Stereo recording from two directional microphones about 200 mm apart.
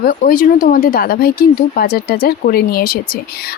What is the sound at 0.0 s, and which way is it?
Speech, 45° left (ahead or behind).